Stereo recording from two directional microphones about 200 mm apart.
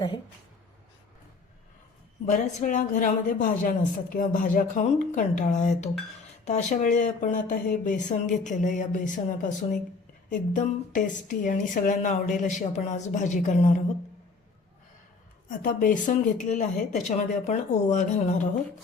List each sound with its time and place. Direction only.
2.2 s a woman's voice: 40° left (ahead or behind)
15.4 s a woman's voice: 40° left (ahead or behind)